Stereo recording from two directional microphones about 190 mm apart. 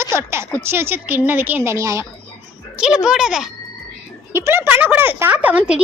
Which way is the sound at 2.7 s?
5° right (ahead or behind).